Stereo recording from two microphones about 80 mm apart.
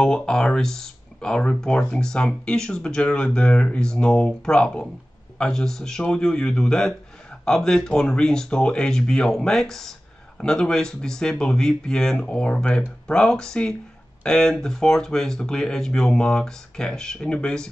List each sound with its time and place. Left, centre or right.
0.0 s speech: centre